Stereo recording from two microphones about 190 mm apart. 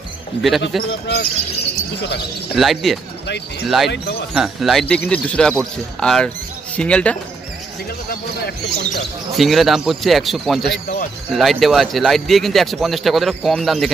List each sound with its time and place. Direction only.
0.3 s speech: 10° left (ahead or behind)
2.5 s speech: centre (ahead or behind)
8.1 s speech: 60° left (ahead or behind)
9.4 s speech: centre (ahead or behind)
10.7 s speech: 55° left (ahead or behind)
11.3 s speech: centre (ahead or behind)